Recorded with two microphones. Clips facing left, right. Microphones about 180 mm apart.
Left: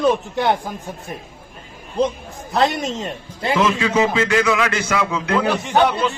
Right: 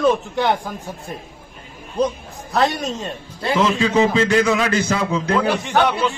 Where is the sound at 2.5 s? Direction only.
20° left (ahead or behind).